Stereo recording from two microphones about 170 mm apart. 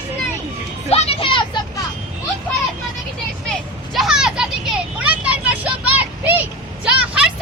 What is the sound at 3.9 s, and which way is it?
Vehicle, centre (ahead or behind).